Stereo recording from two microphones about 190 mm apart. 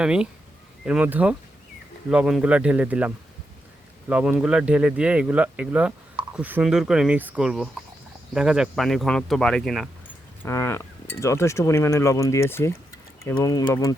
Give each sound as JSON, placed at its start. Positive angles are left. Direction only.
{"t": 0.0, "sound": "speech", "side_deg": -5}
{"t": 4.1, "sound": "speech", "side_deg": -5}
{"t": 10.4, "sound": "speech", "side_deg": 15}